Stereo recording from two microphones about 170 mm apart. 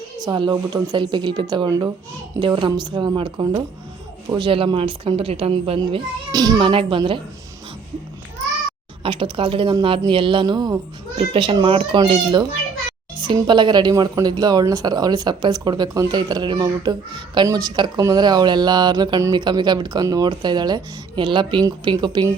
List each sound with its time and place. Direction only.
0.3 s speech: 25° right (ahead or behind)
6.3 s speech: 25° right (ahead or behind)
9.0 s speech: 30° right (ahead or behind)